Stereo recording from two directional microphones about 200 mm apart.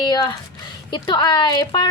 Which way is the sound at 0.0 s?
20° left (ahead or behind).